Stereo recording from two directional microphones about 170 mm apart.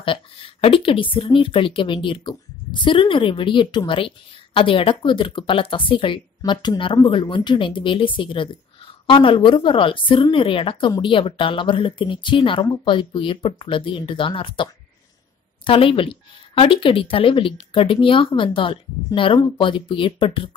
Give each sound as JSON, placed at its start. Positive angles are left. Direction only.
{"t": 0.0, "sound": "speech", "side_deg": 30}